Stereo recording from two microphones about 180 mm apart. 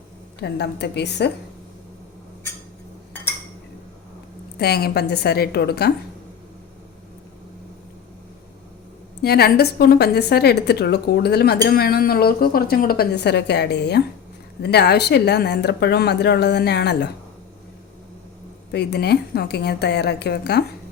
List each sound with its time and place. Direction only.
0.4 s speech: 65° left (ahead or behind)
4.5 s a woman's voice: 60° left (ahead or behind)
9.2 s a woman's voice: 60° left (ahead or behind)
18.7 s a woman's voice: 65° left (ahead or behind)